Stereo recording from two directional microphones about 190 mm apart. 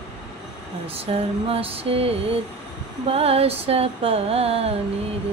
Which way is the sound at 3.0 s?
30° right (ahead or behind).